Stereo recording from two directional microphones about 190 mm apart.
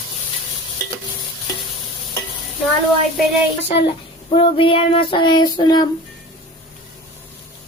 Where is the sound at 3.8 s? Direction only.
30° left (ahead or behind).